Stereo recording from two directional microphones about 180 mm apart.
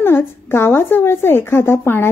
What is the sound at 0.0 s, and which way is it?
A woman's voice, 10° left (ahead or behind).